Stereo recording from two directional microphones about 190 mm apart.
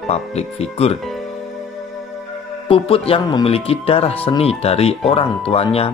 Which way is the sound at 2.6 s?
30° left (ahead or behind).